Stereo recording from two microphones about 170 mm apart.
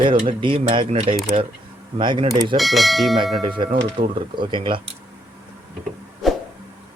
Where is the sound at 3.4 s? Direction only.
30° right (ahead or behind).